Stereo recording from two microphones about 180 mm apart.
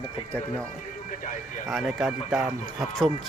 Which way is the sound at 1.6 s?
Centre (ahead or behind).